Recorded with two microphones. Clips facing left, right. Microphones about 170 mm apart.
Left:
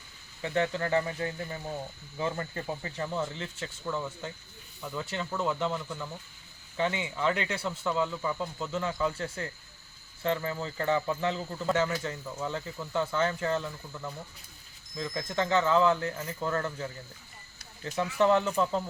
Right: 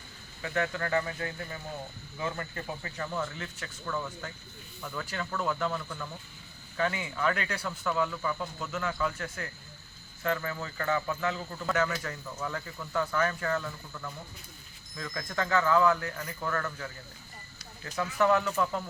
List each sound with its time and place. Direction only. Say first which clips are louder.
0.4 s speech: left 2 dB; 30° left (ahead or behind)
18.2 s speech: left 1 dB; 25° left (ahead or behind)